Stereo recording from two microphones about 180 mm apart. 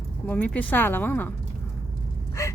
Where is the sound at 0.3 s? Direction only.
10° left (ahead or behind).